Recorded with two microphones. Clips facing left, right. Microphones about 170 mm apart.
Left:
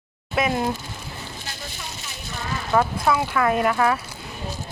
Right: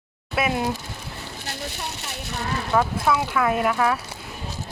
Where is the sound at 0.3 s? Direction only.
5° right (ahead or behind).